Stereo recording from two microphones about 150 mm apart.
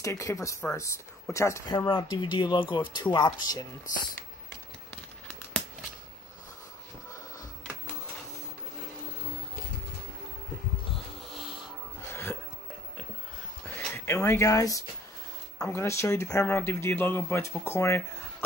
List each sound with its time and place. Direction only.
0.0 s speech: 20° left (ahead or behind)
1.7 s speech: 30° left (ahead or behind)
12.1 s music: 15° left (ahead or behind)
13.7 s a sound: 15° left (ahead or behind)
15.6 s speech: 20° left (ahead or behind)